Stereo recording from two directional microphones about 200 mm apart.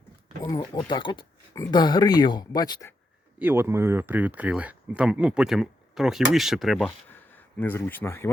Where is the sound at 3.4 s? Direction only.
10° right (ahead or behind).